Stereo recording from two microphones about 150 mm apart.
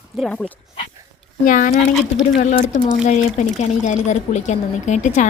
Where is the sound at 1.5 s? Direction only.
65° left (ahead or behind).